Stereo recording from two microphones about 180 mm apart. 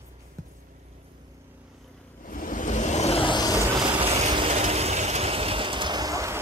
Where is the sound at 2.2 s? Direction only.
50° left (ahead or behind); by 3.5 s 25° left (ahead or behind).